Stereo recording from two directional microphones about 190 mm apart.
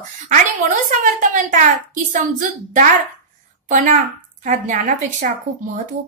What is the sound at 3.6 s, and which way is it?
A woman's voice, 45° right (ahead or behind).